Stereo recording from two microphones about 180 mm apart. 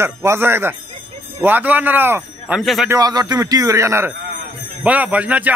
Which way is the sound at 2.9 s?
20° right (ahead or behind).